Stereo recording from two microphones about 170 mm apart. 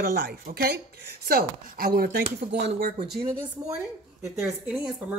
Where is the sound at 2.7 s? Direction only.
55° right (ahead or behind).